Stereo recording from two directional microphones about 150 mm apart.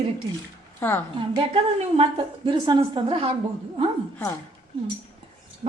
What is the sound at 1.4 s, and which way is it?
A woman's voice, 35° right (ahead or behind).